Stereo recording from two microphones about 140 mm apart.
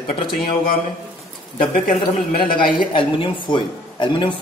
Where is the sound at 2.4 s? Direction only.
35° left (ahead or behind).